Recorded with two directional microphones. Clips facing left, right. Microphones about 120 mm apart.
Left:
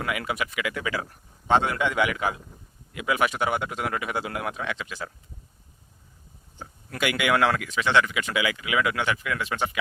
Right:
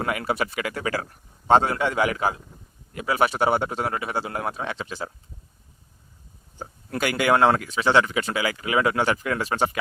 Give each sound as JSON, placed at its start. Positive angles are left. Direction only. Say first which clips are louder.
{"t": 0.0, "sound": "speech", "louder": "right 3 dB", "side_deg": -40}
{"t": 1.0, "sound": "a man's voice", "louder": "even", "side_deg": 0}
{"t": 1.5, "sound": "speech", "louder": "right 3 dB", "side_deg": -35}
{"t": 6.6, "sound": "speech", "louder": "right 2 dB", "side_deg": -40}